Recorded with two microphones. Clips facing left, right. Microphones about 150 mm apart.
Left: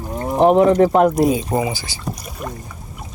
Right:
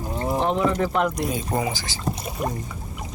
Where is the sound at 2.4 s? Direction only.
25° right (ahead or behind).